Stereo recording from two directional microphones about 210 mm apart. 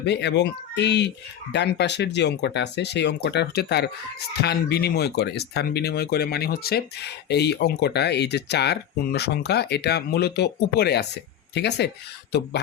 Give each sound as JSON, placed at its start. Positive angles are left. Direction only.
{"t": 0.0, "sound": "speech", "side_deg": 55}